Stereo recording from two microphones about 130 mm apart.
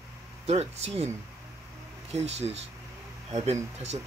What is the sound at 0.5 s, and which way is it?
Speech, 55° right (ahead or behind).